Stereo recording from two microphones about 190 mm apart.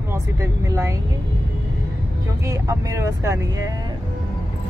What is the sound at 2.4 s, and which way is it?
Speech, 15° right (ahead or behind).